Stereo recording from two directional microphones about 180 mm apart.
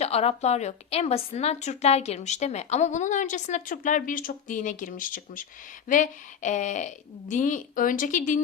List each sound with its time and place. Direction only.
0.0 s a woman's voice: 35° left (ahead or behind)